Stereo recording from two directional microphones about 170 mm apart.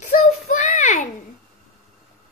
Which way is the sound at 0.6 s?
45° left (ahead or behind).